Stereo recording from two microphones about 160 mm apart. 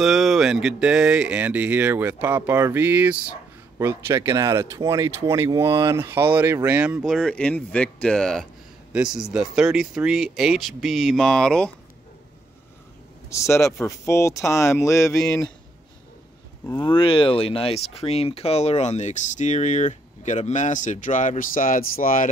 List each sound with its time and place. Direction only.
0.0 s speech: centre (ahead or behind)
13.3 s speech: 20° left (ahead or behind)
16.6 s speech: 30° left (ahead or behind); by 22.3 s 60° left (ahead or behind)